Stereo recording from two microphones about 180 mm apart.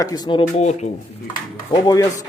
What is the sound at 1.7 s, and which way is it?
Speech, 20° left (ahead or behind).